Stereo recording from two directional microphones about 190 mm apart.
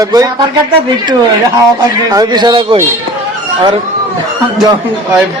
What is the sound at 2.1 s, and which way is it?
Speech, 20° right (ahead or behind).